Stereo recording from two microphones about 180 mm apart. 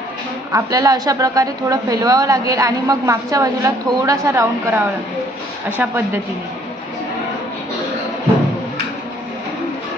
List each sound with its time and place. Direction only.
0.5 s a woman's voice: 20° right (ahead or behind)